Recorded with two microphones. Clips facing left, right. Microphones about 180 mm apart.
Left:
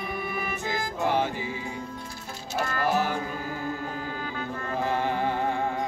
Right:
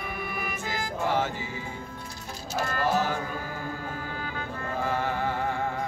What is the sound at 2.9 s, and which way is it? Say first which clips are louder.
Music: left 1 dB; 15° left (ahead or behind).